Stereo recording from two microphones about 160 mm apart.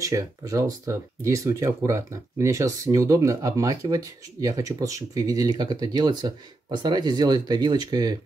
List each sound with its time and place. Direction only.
0.0 s speech: 20° right (ahead or behind)